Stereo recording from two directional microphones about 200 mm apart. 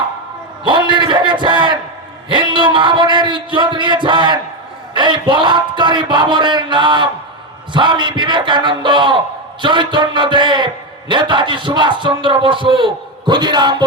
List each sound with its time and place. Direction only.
0.6 s a man's voice: 25° right (ahead or behind)